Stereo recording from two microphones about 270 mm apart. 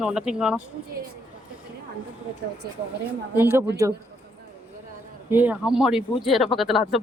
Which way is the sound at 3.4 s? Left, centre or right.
Centre.